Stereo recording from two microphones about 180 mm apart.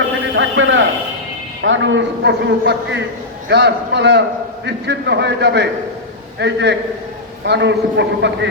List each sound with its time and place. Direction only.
0.3 s a man's voice: 90° right